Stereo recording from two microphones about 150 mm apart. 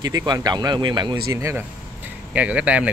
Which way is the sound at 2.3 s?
10° right (ahead or behind).